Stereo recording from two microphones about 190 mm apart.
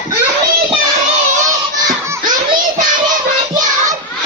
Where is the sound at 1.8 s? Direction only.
15° right (ahead or behind).